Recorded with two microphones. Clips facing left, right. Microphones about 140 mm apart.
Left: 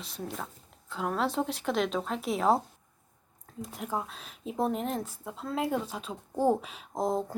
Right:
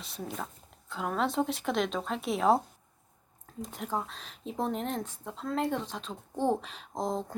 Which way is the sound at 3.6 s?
Centre (ahead or behind).